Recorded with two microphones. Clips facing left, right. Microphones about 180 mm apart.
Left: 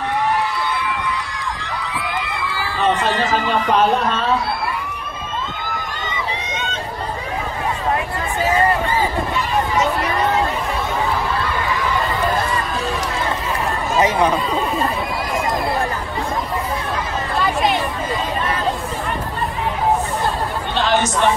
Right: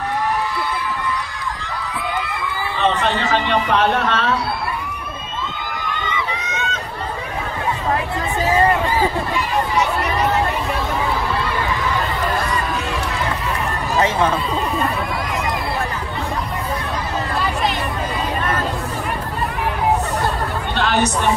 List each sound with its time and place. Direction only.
3.9 s speech: 90° right
13.9 s speech: 15° left (ahead or behind)